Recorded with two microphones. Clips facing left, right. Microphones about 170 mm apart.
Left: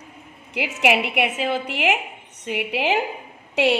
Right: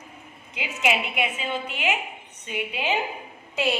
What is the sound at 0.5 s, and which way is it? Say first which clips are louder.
A woman's voice: left 5 dB; 70° left (ahead or behind).